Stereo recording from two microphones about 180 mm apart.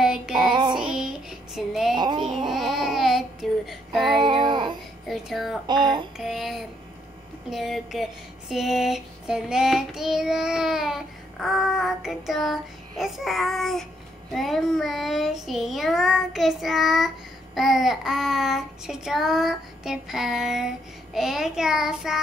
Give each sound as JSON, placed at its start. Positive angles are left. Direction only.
{"t": 0.0, "sound": "child singing", "side_deg": -5}
{"t": 0.4, "sound": "child singing", "side_deg": -25}
{"t": 0.7, "sound": "child singing", "side_deg": -5}
{"t": 2.0, "sound": "a sound", "side_deg": -25}
{"t": 2.5, "sound": "child singing", "side_deg": 0}
{"t": 4.2, "sound": "child singing", "side_deg": -25}
{"t": 5.0, "sound": "a sound", "side_deg": 0}
{"t": 5.7, "sound": "child singing", "side_deg": -25}
{"t": 6.1, "sound": "a sound", "side_deg": 0}
{"t": 14.3, "sound": "child singing", "side_deg": 0}